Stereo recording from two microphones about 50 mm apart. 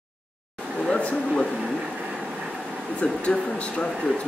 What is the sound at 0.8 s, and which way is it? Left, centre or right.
Speech, centre.